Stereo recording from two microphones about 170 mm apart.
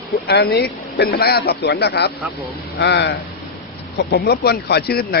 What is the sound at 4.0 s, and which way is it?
Speech, 65° left (ahead or behind).